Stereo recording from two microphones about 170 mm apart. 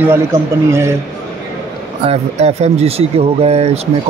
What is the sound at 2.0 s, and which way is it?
Speech, 40° right (ahead or behind).